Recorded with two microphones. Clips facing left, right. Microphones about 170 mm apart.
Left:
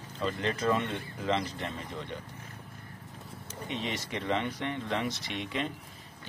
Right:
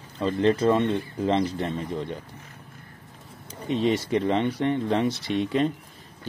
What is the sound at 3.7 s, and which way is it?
Speech, 30° right (ahead or behind).